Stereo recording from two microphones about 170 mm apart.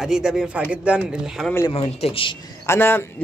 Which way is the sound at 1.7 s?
35° left (ahead or behind).